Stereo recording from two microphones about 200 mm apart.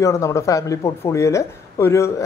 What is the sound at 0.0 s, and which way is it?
Speech, 15° left (ahead or behind).